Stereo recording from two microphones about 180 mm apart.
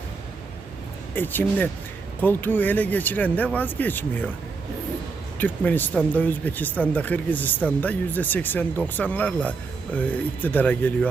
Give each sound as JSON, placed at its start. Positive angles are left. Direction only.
{"t": 1.1, "sound": "speech", "side_deg": 10}
{"t": 5.4, "sound": "speech", "side_deg": 10}